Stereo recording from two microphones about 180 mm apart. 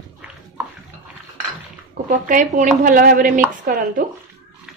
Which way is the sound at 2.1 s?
45° right (ahead or behind).